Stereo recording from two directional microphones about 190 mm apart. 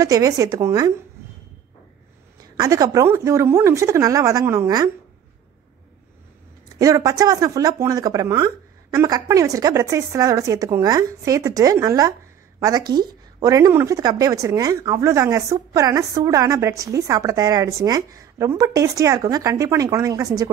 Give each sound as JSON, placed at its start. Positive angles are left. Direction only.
{"t": 0.0, "sound": "speech", "side_deg": -20}
{"t": 2.4, "sound": "a woman's voice", "side_deg": -20}
{"t": 6.8, "sound": "a woman's voice", "side_deg": -20}